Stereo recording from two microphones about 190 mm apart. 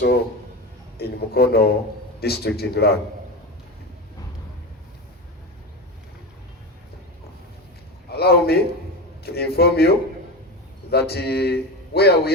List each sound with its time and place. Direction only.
0.9 s speech: 55° left (ahead or behind)
8.1 s a man's voice: 55° left (ahead or behind)
10.9 s speech: 55° left (ahead or behind)